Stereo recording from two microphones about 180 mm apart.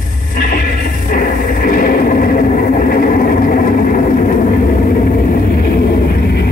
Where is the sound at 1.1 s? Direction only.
50° left (ahead or behind).